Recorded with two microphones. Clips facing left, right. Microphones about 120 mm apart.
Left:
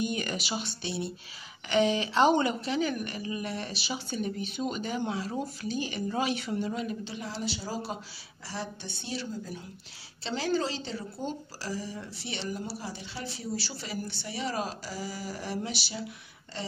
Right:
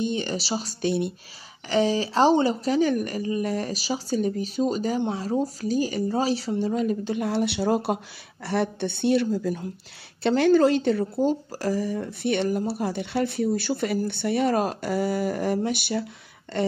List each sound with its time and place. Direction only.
0.0 s speech: 30° right (ahead or behind); by 1.1 s 50° right (ahead or behind)
1.7 s speech: 35° right (ahead or behind); by 9.5 s 75° right (ahead or behind)
10.2 s speech: 60° right (ahead or behind)